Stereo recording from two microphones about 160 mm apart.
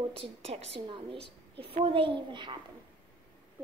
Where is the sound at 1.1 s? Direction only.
90° right.